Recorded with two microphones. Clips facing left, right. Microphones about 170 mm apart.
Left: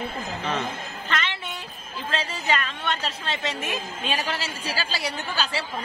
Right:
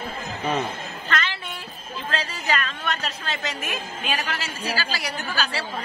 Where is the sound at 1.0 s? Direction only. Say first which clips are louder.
Right 2 dB; 20° left (ahead or behind).